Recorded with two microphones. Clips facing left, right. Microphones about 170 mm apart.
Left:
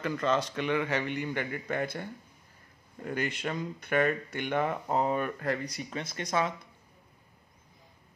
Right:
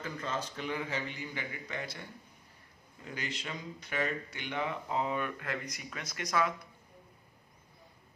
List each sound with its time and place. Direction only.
0.0 s a man's voice: 75° left (ahead or behind); by 6.5 s 25° left (ahead or behind)